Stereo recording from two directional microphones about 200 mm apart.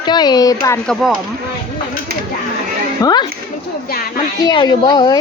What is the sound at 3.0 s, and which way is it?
Speech, 20° left (ahead or behind).